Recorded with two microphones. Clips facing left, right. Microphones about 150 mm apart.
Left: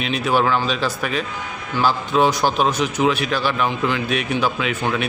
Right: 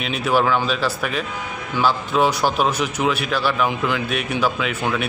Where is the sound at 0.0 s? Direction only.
Centre (ahead or behind).